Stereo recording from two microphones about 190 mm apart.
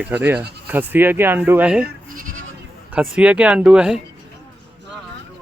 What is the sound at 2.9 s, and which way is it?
Speech, 5° right (ahead or behind).